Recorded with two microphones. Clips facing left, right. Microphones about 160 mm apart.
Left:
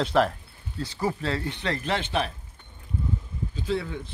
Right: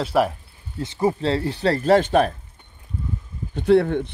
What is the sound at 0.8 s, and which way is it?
Speech, 20° right (ahead or behind).